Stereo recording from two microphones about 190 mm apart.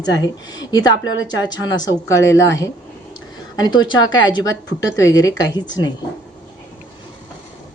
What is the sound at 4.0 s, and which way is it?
Speech, 90° left.